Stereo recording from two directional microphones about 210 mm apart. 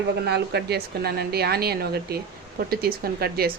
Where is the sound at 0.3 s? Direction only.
50° right (ahead or behind).